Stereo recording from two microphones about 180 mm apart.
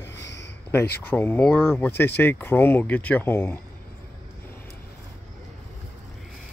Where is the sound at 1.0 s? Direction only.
10° left (ahead or behind).